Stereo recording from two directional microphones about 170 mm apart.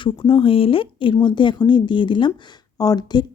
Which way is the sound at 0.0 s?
30° left (ahead or behind).